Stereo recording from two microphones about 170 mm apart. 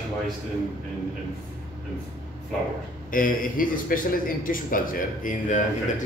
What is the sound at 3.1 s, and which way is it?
A man's voice, 55° left (ahead or behind).